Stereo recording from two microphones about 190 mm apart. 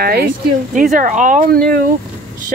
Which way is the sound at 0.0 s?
55° right (ahead or behind).